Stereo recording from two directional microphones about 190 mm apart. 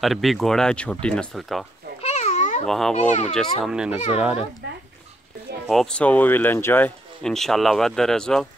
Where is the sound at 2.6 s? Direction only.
Centre (ahead or behind).